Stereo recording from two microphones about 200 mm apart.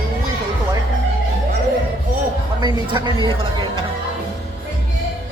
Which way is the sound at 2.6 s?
20° right (ahead or behind).